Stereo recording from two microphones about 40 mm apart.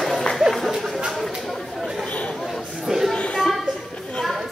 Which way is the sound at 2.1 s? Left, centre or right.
Left.